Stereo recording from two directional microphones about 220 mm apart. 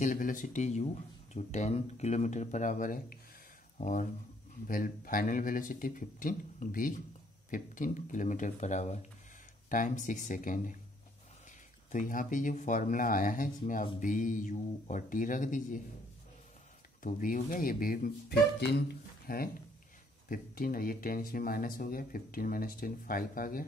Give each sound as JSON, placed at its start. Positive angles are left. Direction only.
{"t": 0.0, "sound": "speech", "side_deg": 35}
{"t": 11.9, "sound": "speech", "side_deg": 35}
{"t": 17.0, "sound": "speech", "side_deg": 40}